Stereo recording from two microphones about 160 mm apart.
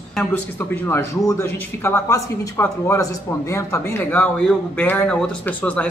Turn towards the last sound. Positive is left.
turn(degrees=10)  # may be behind; listen again after turning